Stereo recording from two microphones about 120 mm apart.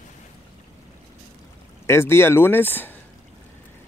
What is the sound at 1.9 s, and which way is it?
Speech, 20° left (ahead or behind).